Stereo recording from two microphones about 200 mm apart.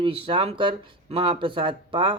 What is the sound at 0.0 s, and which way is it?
Speech, 25° right (ahead or behind).